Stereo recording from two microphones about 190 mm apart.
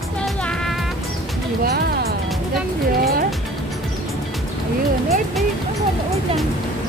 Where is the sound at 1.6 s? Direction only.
55° right (ahead or behind).